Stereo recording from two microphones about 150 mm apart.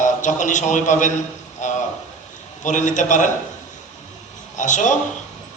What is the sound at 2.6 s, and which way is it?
Speech, 55° left (ahead or behind).